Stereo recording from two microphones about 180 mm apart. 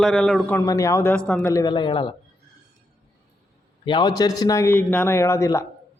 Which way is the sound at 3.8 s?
25° left (ahead or behind).